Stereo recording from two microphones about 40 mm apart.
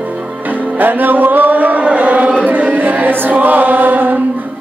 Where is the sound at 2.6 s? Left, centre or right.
Right.